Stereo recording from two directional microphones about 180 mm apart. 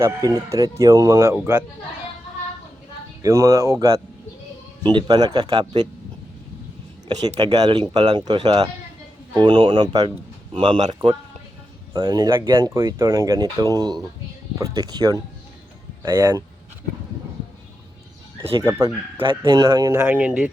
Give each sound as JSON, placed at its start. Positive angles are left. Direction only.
{"t": 0.0, "sound": "speech", "side_deg": -20}
{"t": 3.2, "sound": "speech", "side_deg": -15}
{"t": 7.3, "sound": "speech", "side_deg": -20}
{"t": 11.9, "sound": "speech", "side_deg": -20}
{"t": 18.6, "sound": "speech", "side_deg": -10}